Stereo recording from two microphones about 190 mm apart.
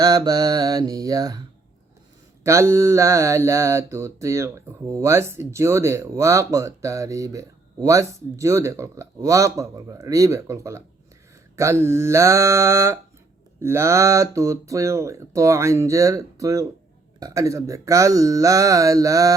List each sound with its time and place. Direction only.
0.0 s mantra: 20° right (ahead or behind)
2.4 s mantra: 15° right (ahead or behind)